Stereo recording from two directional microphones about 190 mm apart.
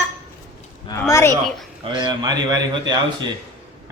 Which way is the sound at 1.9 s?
20° right (ahead or behind).